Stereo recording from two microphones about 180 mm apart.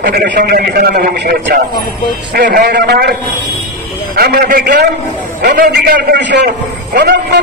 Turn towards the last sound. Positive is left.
turn(degrees=-70)  # may be behind; listen again after turning